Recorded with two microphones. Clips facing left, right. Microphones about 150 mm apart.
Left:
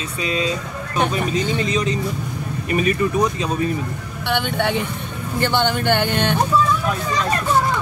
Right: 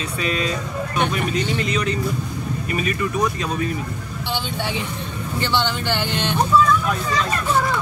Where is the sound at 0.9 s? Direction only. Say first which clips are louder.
Left 2 dB; 35° left (ahead or behind).